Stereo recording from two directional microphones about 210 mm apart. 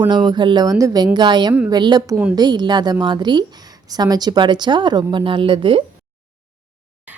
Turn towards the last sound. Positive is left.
turn(degrees=-25)  # may be behind; listen again after turning